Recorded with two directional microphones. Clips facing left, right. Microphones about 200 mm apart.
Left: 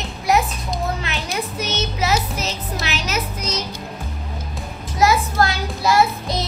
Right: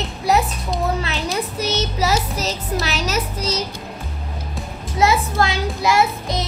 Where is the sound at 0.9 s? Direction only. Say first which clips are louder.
Right 3 dB; 35° right (ahead or behind).